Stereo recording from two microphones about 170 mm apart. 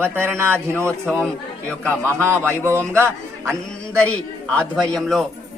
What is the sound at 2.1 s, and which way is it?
A man's voice, 15° right (ahead or behind).